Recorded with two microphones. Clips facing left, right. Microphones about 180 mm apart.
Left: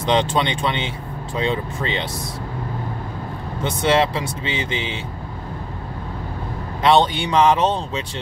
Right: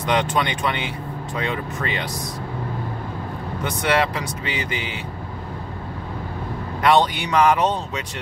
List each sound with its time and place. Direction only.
0.0 s speech: 25° left (ahead or behind)
3.6 s speech: 25° left (ahead or behind)
6.8 s speech: 25° left (ahead or behind)